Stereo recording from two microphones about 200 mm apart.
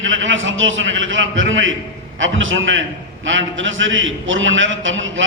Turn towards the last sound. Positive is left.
turn(degrees=-70)  # may be behind; listen again after turning